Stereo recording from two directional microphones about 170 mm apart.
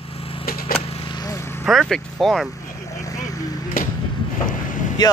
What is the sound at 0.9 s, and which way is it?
Vehicle, 25° left (ahead or behind).